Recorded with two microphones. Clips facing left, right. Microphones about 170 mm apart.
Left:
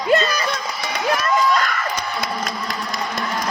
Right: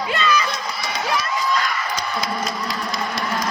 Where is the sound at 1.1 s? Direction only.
50° left (ahead or behind).